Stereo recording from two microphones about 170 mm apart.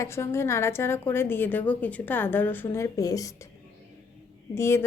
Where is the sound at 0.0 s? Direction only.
15° left (ahead or behind).